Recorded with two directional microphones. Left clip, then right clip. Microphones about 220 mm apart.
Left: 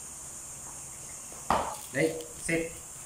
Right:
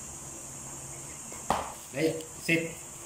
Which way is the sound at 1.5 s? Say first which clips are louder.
Left 2 dB; 15° right (ahead or behind).